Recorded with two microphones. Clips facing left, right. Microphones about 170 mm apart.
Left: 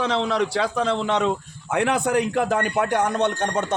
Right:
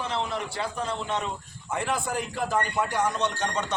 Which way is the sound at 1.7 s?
75° left (ahead or behind).